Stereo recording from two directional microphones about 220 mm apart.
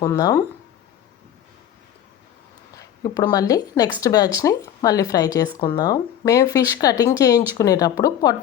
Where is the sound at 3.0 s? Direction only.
15° left (ahead or behind).